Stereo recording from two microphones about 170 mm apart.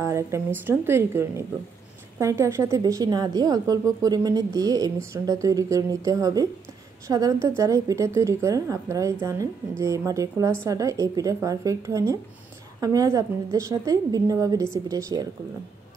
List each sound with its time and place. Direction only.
0.0 s a woman's voice: 15° right (ahead or behind)